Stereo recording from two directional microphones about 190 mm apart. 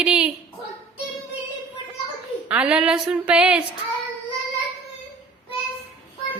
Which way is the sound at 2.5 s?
5° right (ahead or behind).